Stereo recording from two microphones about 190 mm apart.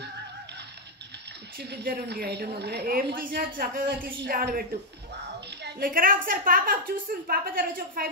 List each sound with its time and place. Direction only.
1.9 s a woman's voice: 55° right (ahead or behind)